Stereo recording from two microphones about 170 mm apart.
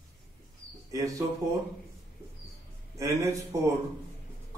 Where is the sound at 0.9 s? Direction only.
20° right (ahead or behind).